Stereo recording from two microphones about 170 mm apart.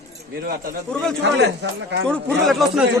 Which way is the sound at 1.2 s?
90° right.